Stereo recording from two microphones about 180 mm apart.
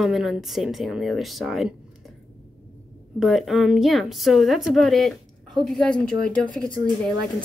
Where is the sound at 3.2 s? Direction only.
Centre (ahead or behind).